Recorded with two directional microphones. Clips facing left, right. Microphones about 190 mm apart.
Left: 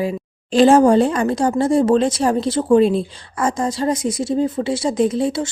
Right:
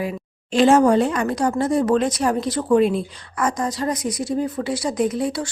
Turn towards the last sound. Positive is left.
turn(degrees=25)  # may be behind; listen again after turning